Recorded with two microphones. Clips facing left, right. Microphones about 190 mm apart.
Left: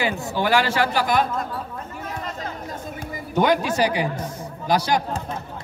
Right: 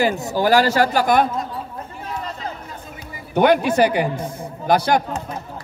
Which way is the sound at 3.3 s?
60° right (ahead or behind).